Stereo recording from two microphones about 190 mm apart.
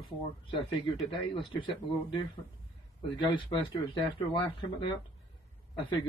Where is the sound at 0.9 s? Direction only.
Centre (ahead or behind).